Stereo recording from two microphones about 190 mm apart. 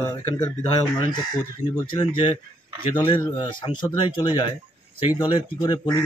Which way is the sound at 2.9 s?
10° left (ahead or behind).